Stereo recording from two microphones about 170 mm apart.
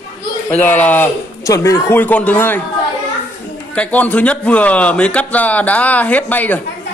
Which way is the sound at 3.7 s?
10° left (ahead or behind).